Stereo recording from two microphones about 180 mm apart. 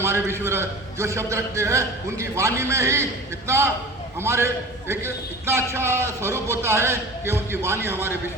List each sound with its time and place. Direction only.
0.0 s a man's voice: 15° right (ahead or behind)